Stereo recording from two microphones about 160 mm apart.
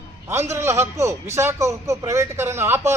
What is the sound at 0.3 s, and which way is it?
A man's voice, 15° right (ahead or behind).